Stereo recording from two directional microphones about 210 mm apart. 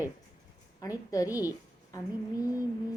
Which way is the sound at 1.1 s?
15° left (ahead or behind).